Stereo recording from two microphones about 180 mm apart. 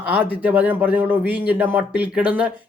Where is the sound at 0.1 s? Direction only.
10° right (ahead or behind).